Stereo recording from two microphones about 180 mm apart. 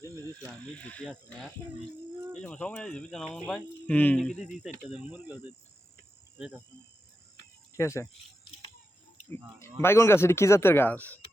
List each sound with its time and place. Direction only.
0.4 s speech: 5° left (ahead or behind)
7.8 s speech: 15° left (ahead or behind)
9.8 s speech: 15° left (ahead or behind)